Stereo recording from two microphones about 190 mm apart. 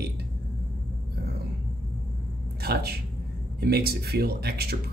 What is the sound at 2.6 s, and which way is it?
Speech, 55° right (ahead or behind).